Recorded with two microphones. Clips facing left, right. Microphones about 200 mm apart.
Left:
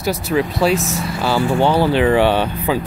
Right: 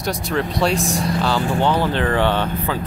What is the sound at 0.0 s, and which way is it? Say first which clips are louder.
Speech: left 4 dB; 5° left (ahead or behind).